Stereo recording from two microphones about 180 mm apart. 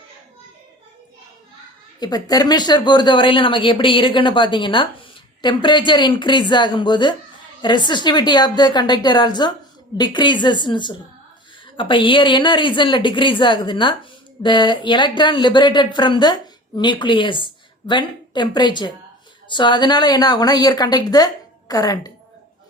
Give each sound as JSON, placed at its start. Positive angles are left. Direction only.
{"t": 2.0, "sound": "speech", "side_deg": 20}